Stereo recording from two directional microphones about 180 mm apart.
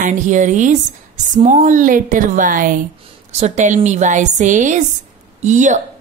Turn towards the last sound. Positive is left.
turn(degrees=-40)  # may be behind; listen again after turning